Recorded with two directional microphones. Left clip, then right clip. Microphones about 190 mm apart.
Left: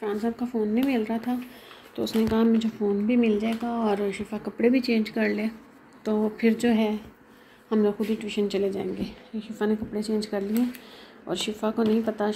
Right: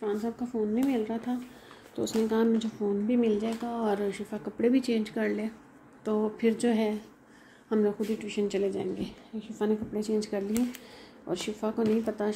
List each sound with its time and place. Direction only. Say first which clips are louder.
0.0 s speech: left 3 dB; 5° right (ahead or behind)